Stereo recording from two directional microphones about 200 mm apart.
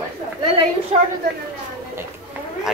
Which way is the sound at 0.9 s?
25° right (ahead or behind).